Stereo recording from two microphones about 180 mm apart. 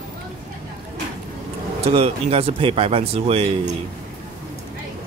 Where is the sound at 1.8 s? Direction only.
35° right (ahead or behind).